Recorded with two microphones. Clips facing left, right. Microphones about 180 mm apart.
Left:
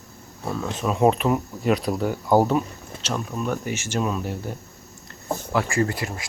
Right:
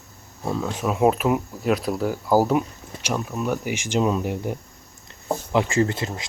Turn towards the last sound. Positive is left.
turn(degrees=-25)  # may be behind; listen again after turning